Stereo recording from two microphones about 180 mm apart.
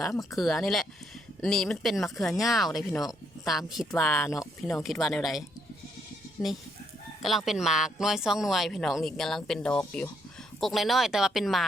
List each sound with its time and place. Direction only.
0.1 s speech: 20° left (ahead or behind)
0.3 s speech: centre (ahead or behind)
7.2 s speech: centre (ahead or behind)